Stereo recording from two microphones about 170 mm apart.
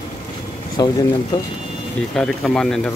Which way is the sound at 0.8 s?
25° left (ahead or behind).